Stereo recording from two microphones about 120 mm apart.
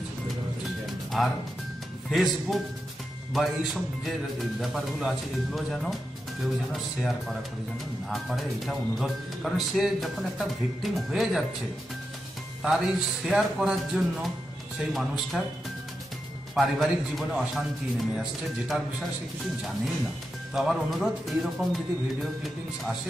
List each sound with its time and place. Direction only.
1.2 s speech: centre (ahead or behind)
12.6 s speech: 5° right (ahead or behind)
16.5 s speech: centre (ahead or behind)
20.5 s speech: centre (ahead or behind)